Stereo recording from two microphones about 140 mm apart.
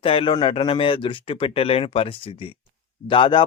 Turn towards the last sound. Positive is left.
turn(degrees=40)  # may be behind; listen again after turning